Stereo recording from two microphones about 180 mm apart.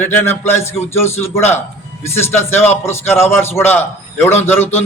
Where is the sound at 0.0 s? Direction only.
10° left (ahead or behind).